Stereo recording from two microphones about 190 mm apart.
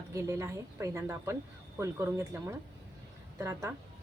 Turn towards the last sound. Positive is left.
turn(degrees=-15)  # may be behind; listen again after turning